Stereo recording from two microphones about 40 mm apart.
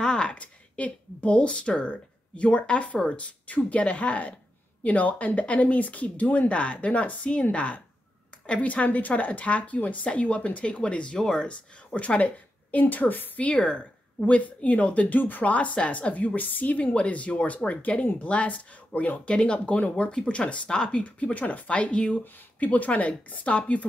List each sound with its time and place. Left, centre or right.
0.0 s a sound: left
0.4 s speech: left
10.0 s speech: left
11.1 s speech: centre
11.4 s speech: left
12.9 s a woman's voice: left
13.5 s speech: left
16.3 s speech: left
20.7 s speech: left
21.0 s speech: left